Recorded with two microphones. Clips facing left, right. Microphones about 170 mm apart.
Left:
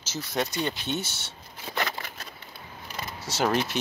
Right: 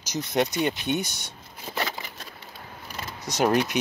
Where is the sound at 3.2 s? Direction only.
15° right (ahead or behind).